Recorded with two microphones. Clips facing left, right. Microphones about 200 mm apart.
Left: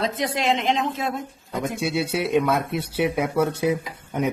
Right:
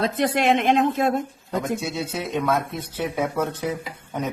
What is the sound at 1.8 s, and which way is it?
Speech, 10° left (ahead or behind).